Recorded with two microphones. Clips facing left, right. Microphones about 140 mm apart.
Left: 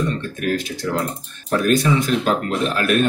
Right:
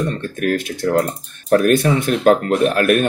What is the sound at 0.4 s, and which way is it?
Speech, 55° right (ahead or behind).